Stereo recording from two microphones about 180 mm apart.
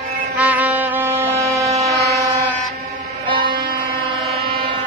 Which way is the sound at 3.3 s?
25° right (ahead or behind).